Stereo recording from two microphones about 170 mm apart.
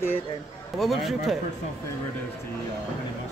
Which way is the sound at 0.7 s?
Centre (ahead or behind).